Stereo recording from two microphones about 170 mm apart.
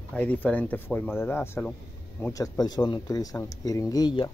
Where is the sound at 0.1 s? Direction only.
5° left (ahead or behind).